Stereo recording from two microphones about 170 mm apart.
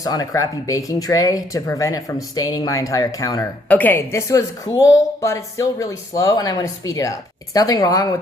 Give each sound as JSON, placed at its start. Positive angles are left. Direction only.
{"t": 0.0, "sound": "speech", "side_deg": 20}
{"t": 3.7, "sound": "speech", "side_deg": 10}